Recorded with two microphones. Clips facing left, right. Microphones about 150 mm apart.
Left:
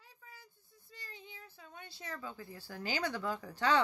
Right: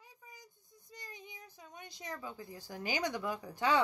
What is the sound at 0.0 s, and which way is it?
Speech, 15° right (ahead or behind).